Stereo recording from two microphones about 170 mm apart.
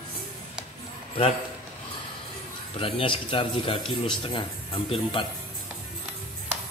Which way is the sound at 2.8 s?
30° left (ahead or behind).